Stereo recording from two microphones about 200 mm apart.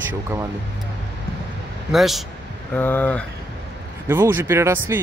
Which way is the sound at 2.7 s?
10° left (ahead or behind).